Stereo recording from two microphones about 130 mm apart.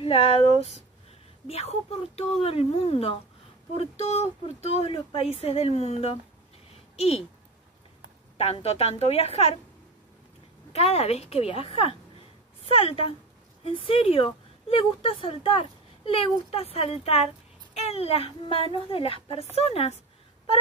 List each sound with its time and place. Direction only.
0.0 s a woman's voice: 50° left (ahead or behind)
8.4 s a woman's voice: 50° left (ahead or behind)
10.7 s a woman's voice: 50° left (ahead or behind)